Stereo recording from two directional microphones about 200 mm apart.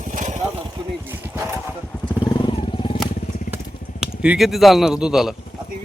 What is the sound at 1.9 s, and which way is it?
Wild animals, 15° left (ahead or behind).